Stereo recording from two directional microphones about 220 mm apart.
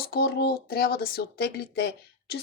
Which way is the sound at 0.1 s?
45° left (ahead or behind).